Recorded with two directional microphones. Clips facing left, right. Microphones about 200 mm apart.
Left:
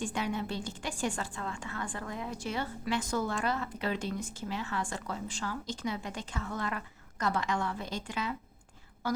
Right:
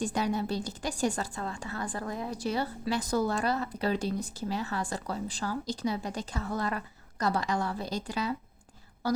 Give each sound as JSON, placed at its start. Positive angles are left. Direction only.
{"t": 0.0, "sound": "a woman's voice", "side_deg": -40}